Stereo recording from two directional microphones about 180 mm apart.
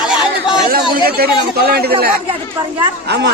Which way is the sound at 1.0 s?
60° right (ahead or behind).